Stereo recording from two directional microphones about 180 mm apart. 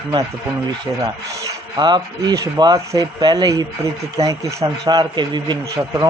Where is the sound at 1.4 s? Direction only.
25° right (ahead or behind).